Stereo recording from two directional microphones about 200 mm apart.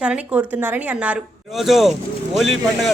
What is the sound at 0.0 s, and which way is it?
Speech, 10° right (ahead or behind).